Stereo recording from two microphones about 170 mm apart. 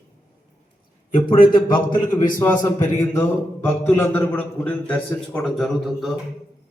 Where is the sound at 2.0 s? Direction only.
20° left (ahead or behind); by 6.1 s centre (ahead or behind).